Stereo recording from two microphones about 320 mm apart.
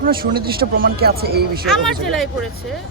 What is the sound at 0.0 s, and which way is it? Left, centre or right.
Speech, right.